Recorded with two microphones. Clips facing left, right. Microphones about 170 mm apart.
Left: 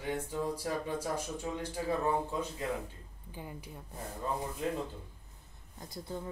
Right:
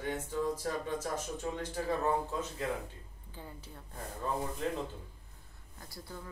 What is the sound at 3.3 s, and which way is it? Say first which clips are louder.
Speech: left 3 dB; 15° left (ahead or behind).